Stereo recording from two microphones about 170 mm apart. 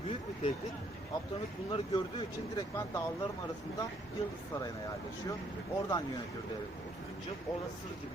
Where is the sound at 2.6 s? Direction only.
20° left (ahead or behind).